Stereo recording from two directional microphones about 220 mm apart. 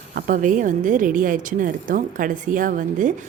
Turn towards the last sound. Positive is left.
turn(degrees=-35)  # may be behind; listen again after turning